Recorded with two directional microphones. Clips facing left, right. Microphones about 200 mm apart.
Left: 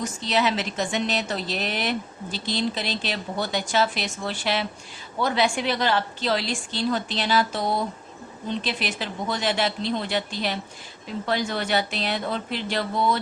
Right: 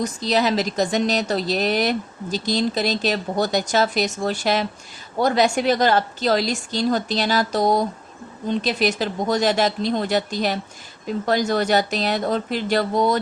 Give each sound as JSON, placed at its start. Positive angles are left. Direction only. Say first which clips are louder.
{"t": 0.0, "sound": "speech", "louder": "right 4 dB", "side_deg": -40}